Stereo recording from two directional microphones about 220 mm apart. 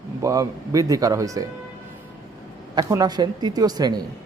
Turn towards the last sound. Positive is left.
turn(degrees=-15)  # may be behind; listen again after turning